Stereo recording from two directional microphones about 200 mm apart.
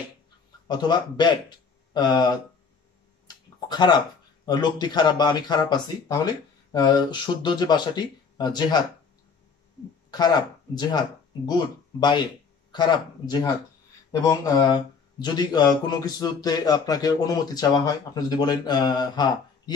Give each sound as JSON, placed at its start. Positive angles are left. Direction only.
{"t": 0.7, "sound": "speech", "side_deg": 20}
{"t": 3.3, "sound": "clicking", "side_deg": 20}
{"t": 4.5, "sound": "speech", "side_deg": 20}
{"t": 10.1, "sound": "speech", "side_deg": 20}